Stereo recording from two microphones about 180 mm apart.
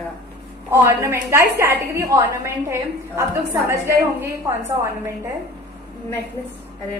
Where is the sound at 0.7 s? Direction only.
15° right (ahead or behind).